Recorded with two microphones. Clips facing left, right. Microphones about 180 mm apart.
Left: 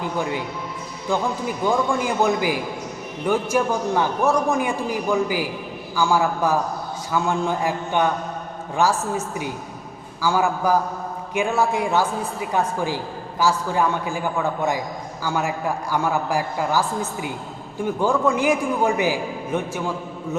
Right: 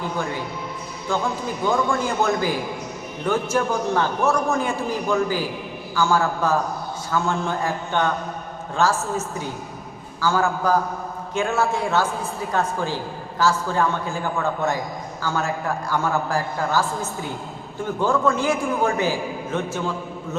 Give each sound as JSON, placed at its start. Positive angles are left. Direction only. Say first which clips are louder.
{"t": 0.0, "sound": "a man's voice", "louder": "left 2 dB", "side_deg": 15}